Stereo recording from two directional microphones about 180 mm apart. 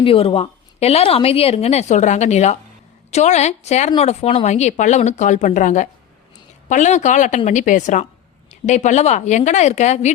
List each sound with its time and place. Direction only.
0.0 s a woman's voice: 30° left (ahead or behind)